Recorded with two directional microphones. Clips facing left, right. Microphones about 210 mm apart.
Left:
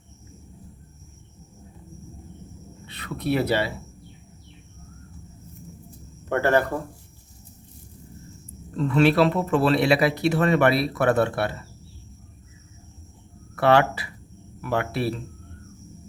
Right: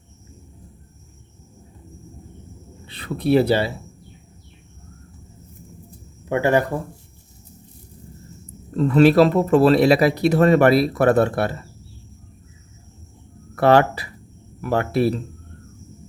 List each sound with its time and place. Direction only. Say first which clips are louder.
2.8 s speech: right 5 dB; 30° right (ahead or behind)
6.2 s speech: right 2 dB; 10° right (ahead or behind)
8.7 s speech: right 6 dB; 40° right (ahead or behind)
13.6 s speech: right 4 dB; 40° right (ahead or behind)